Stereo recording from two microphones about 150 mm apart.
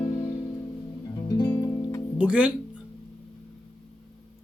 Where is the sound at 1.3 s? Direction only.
25° left (ahead or behind).